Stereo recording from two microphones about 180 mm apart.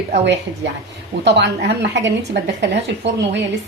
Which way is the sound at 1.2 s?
75° right (ahead or behind).